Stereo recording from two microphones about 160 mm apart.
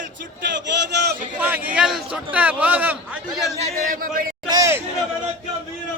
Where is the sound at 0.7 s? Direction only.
90° right.